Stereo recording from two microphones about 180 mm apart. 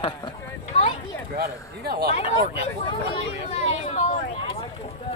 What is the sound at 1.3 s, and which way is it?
Speech, 60° right (ahead or behind).